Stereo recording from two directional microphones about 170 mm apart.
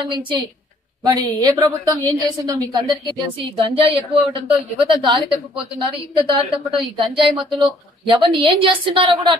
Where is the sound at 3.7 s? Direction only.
35° right (ahead or behind).